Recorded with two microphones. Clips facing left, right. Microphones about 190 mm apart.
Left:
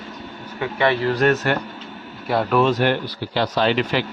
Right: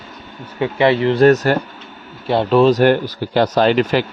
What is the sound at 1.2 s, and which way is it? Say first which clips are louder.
Speech: right 8 dB; 40° right (ahead or behind).